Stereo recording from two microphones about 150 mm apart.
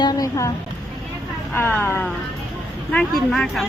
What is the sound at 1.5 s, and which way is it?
Speech, 15° left (ahead or behind).